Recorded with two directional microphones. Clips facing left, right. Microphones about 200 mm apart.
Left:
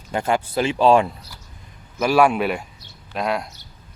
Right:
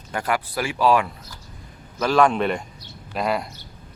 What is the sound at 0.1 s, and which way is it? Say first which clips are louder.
Speech: left 3 dB; 25° left (ahead or behind).